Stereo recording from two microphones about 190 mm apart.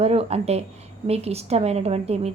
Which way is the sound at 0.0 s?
35° right (ahead or behind).